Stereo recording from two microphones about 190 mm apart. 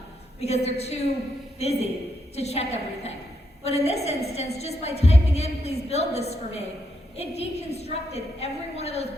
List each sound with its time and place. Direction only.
0.4 s a woman's voice: 35° left (ahead or behind)